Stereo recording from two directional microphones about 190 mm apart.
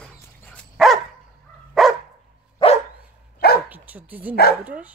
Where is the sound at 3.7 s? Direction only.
10° right (ahead or behind).